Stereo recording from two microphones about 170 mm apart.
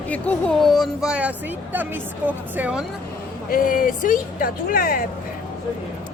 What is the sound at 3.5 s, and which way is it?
Speech, 55° left (ahead or behind).